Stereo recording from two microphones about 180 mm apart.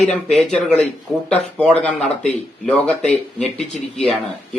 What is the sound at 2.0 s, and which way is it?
Speech, 35° left (ahead or behind).